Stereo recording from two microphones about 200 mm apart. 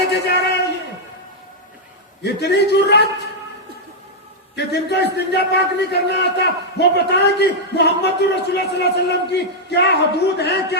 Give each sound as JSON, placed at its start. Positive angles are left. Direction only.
{"t": 0.1, "sound": "a sound", "side_deg": 60}
{"t": 2.2, "sound": "a man's voice", "side_deg": 55}
{"t": 4.5, "sound": "a man's voice", "side_deg": 55}